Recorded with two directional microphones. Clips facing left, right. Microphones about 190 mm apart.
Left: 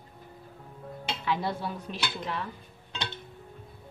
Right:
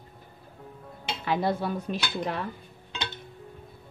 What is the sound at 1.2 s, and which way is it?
Dishes, 50° right (ahead or behind).